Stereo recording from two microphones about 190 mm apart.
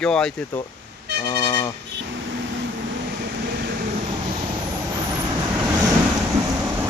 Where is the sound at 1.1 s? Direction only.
60° right (ahead or behind).